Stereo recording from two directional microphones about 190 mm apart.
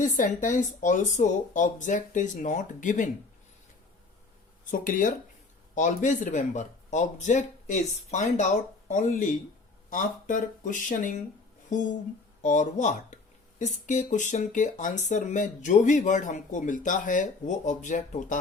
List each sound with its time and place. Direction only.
0.0 s speech: 40° left (ahead or behind)
4.7 s speech: 45° left (ahead or behind)